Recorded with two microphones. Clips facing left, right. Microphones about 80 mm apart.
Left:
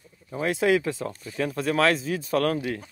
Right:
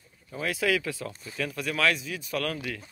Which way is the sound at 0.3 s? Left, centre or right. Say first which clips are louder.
Left 5 dB; left.